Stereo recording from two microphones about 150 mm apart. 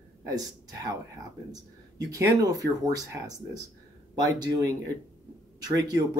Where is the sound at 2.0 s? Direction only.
20° right (ahead or behind).